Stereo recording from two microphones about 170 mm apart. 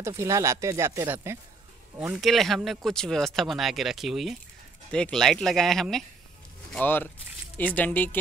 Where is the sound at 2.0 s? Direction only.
5° right (ahead or behind).